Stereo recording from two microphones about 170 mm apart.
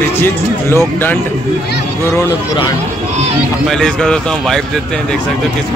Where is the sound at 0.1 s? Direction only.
15° left (ahead or behind).